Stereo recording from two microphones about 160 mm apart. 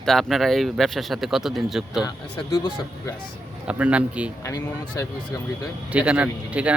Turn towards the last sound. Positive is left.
turn(degrees=-10)  # may be behind; listen again after turning